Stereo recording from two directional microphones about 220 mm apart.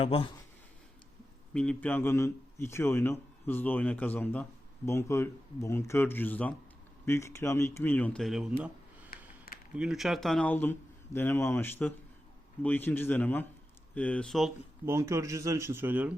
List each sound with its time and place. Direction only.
0.0 s speech: 25° left (ahead or behind)
1.5 s a man's voice: 5° left (ahead or behind)
9.1 s a sound: 40° left (ahead or behind)
9.7 s a man's voice: 5° right (ahead or behind)
14.8 s speech: 10° right (ahead or behind)